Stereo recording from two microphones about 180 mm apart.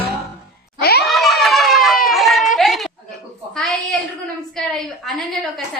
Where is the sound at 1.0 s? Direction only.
Centre (ahead or behind).